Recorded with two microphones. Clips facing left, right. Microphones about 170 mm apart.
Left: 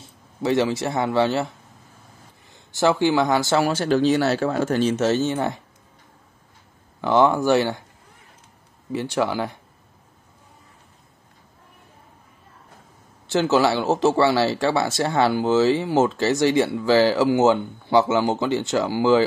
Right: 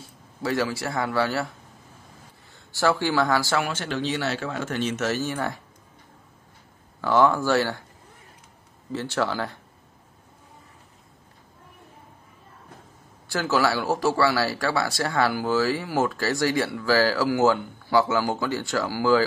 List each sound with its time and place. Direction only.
0.4 s speech: 25° left (ahead or behind)
2.5 s speech: 20° left (ahead or behind)
3.6 s speech: 35° left (ahead or behind)
7.0 s speech: 20° left (ahead or behind)
8.9 s speech: 15° left (ahead or behind)
13.3 s speech: 25° left (ahead or behind)